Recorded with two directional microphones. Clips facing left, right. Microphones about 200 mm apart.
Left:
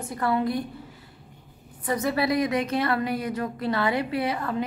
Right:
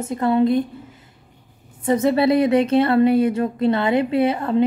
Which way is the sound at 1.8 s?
25° right (ahead or behind).